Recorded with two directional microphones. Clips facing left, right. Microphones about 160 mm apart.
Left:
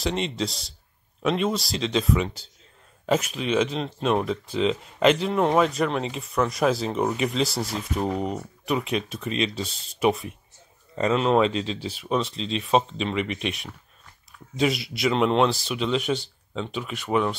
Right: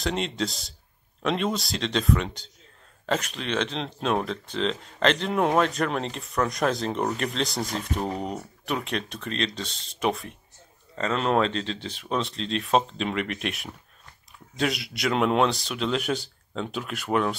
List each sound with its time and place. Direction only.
0.0 s speech: centre (ahead or behind)